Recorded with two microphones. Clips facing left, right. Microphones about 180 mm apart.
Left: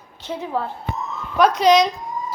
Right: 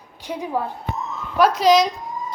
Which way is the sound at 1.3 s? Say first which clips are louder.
Left 1 dB; 5° right (ahead or behind).